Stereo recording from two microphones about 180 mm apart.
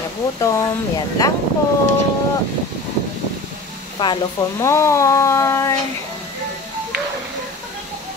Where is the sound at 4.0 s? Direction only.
20° left (ahead or behind).